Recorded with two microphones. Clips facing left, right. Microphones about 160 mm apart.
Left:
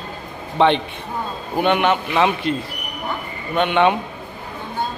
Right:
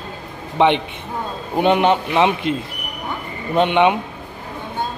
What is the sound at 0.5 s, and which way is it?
Speech, 15° right (ahead or behind).